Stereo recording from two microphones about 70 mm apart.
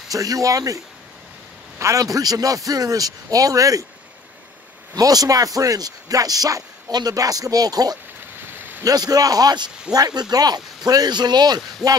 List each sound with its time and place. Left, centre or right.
0.1 s speech: right
4.9 s a man's voice: right